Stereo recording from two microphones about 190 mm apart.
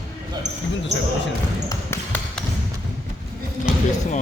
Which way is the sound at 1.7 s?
10° left (ahead or behind).